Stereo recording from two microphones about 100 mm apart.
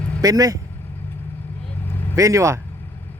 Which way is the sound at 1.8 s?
20° left (ahead or behind).